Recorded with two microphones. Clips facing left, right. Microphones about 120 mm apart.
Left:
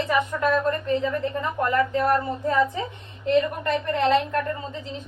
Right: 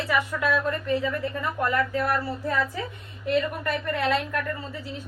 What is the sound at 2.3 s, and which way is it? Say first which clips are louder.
Speech: left 5 dB; 20° left (ahead or behind).